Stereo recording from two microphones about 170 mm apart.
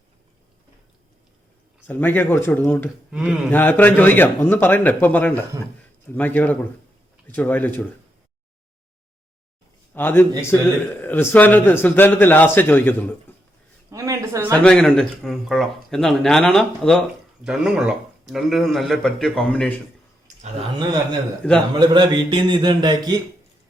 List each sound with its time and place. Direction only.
1.9 s a man's voice: 10° left (ahead or behind)
3.1 s speech: 5° right (ahead or behind)
3.5 s a man's voice: 10° left (ahead or behind)
9.9 s a man's voice: 10° left (ahead or behind)
13.9 s a sound: 20° right (ahead or behind)
14.6 s speech: 5° left (ahead or behind)
20.2 s clicking: 40° right (ahead or behind)
21.7 s speech: 25° right (ahead or behind)